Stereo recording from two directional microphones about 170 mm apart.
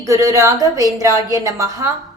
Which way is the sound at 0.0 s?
20° right (ahead or behind).